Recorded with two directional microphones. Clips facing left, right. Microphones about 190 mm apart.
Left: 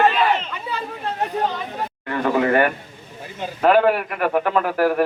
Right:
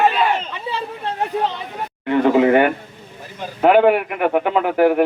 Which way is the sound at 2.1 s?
20° right (ahead or behind).